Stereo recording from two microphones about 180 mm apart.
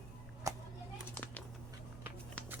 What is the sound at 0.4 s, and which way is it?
Children playing, 20° right (ahead or behind).